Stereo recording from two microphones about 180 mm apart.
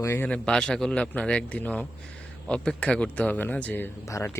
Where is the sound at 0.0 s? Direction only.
10° left (ahead or behind).